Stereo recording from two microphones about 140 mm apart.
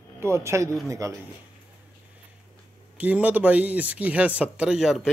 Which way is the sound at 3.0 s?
10° right (ahead or behind).